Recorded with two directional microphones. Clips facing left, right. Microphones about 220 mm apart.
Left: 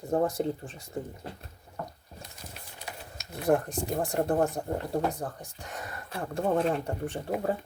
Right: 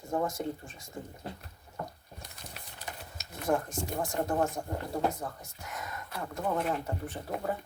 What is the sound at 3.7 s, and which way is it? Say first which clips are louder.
Speech: left 4 dB; 35° left (ahead or behind).